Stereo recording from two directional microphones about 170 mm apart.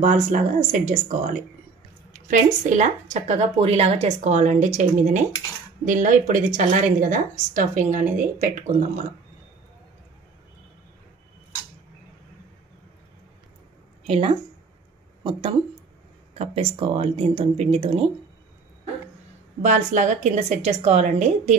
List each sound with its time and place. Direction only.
0.0 s a woman's voice: 45° right (ahead or behind)
14.0 s speech: 35° right (ahead or behind)
16.3 s speech: 35° right (ahead or behind)
19.6 s a woman's voice: 50° right (ahead or behind)